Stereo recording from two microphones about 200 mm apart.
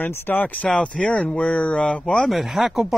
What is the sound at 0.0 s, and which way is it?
Speech, 10° left (ahead or behind).